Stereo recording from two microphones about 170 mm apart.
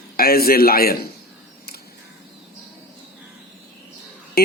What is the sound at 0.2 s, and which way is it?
Speech, 60° left (ahead or behind).